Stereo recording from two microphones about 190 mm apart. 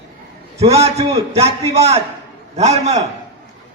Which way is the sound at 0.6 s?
35° right (ahead or behind).